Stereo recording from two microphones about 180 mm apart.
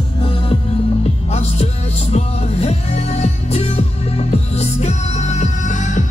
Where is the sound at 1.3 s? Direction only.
35° left (ahead or behind).